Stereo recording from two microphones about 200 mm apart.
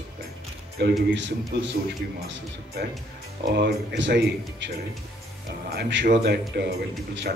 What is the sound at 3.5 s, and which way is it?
Speech, 60° right (ahead or behind).